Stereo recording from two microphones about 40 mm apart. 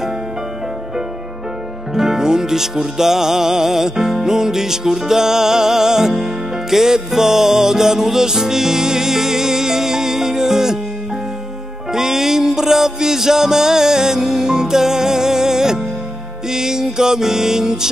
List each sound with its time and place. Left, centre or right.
2.0 s music: centre
11.9 s music: centre